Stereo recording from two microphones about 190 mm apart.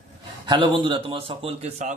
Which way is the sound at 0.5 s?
25° right (ahead or behind).